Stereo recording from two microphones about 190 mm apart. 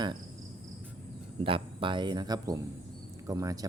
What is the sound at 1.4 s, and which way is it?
Speech, 25° right (ahead or behind).